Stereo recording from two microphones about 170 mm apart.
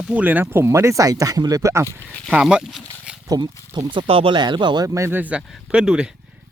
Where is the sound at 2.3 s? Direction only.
5° right (ahead or behind).